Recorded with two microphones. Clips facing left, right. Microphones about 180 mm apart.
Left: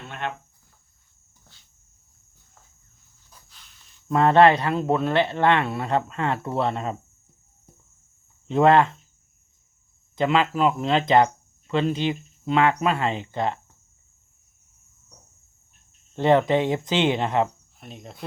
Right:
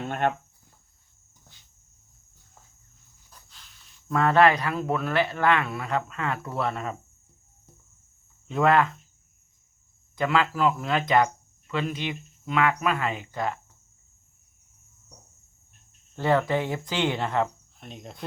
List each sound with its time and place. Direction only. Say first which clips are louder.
0.1 s speech: right 5 dB; 50° right (ahead or behind)
3.2 s walk: even; centre (ahead or behind)
4.1 s speech: left 4 dB; 25° left (ahead or behind)
8.4 s speech: left 4 dB; 30° left (ahead or behind)
10.2 s speech: left 3 dB; 20° left (ahead or behind)
16.1 s speech: left 5 dB; 20° left (ahead or behind)
17.7 s speech: even; centre (ahead or behind)